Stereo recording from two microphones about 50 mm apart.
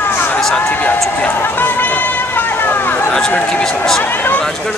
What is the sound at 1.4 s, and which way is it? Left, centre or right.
Run, left.